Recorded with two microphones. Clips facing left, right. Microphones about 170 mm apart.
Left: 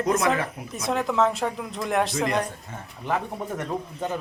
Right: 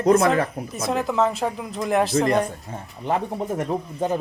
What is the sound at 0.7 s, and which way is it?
Speech, centre (ahead or behind).